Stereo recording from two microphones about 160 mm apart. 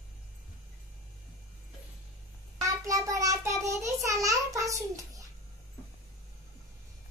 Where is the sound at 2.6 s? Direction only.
20° right (ahead or behind).